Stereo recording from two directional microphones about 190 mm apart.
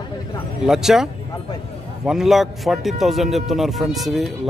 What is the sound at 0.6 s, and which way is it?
A man's voice, centre (ahead or behind).